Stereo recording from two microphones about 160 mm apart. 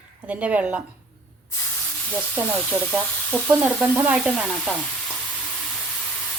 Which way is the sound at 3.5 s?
10° right (ahead or behind).